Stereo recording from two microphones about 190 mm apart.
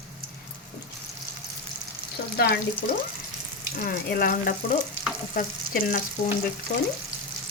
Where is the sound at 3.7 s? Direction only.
50° left (ahead or behind).